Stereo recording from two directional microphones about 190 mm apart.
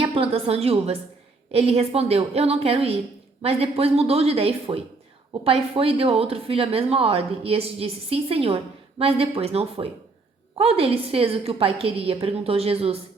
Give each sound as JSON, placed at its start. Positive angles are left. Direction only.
{"t": 0.0, "sound": "a woman's voice", "side_deg": -30}